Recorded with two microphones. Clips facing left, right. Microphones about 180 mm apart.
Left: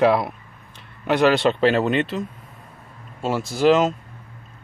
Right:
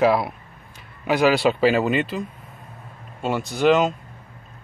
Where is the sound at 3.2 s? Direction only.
Centre (ahead or behind).